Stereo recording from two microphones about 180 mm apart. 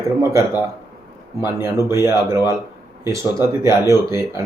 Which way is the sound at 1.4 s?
15° right (ahead or behind).